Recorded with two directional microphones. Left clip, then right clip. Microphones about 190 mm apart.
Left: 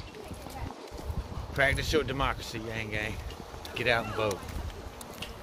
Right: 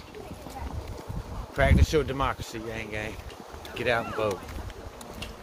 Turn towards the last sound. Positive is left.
turn(degrees=-10)  # may be behind; listen again after turning